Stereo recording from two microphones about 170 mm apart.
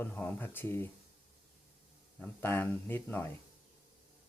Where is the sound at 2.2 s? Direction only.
10° left (ahead or behind).